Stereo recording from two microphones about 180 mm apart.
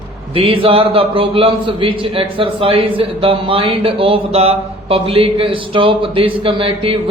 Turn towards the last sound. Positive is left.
turn(degrees=-30)  # may be behind; listen again after turning